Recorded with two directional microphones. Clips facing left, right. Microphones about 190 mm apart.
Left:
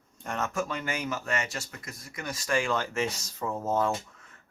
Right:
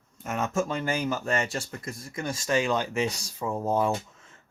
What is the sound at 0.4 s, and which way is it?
Speech, 25° right (ahead or behind).